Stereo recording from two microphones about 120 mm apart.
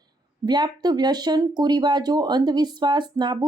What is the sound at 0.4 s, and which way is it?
Speech, 35° right (ahead or behind).